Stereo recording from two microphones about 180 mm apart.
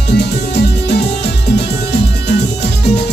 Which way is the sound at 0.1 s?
70° left (ahead or behind).